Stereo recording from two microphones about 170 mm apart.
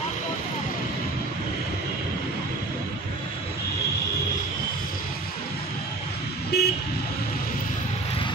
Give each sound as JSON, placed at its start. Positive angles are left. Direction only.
{"t": 6.5, "sound": "vehicle", "side_deg": 70}